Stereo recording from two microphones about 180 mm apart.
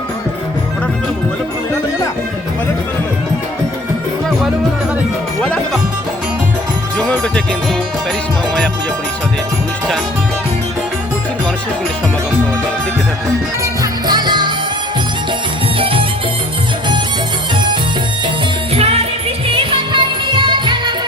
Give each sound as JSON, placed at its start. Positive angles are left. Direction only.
{"t": 5.4, "sound": "music", "side_deg": 5}
{"t": 6.9, "sound": "speech", "side_deg": 5}
{"t": 13.8, "sound": "music", "side_deg": -25}
{"t": 15.8, "sound": "music", "side_deg": -30}
{"t": 18.7, "sound": "music", "side_deg": -35}